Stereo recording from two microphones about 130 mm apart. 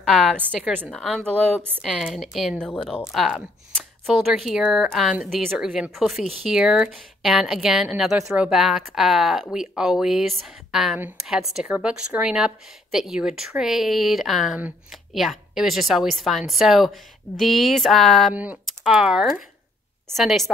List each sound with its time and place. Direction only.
0.0 s a woman's voice: centre (ahead or behind)
1.2 s a woman's voice: 15° right (ahead or behind)
2.0 s a woman's voice: centre (ahead or behind)
18.3 s a woman's voice: 10° right (ahead or behind)